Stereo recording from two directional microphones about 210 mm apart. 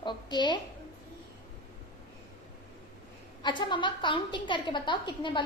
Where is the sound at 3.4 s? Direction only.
20° left (ahead or behind).